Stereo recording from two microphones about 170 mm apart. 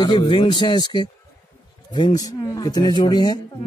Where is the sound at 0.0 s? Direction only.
25° left (ahead or behind).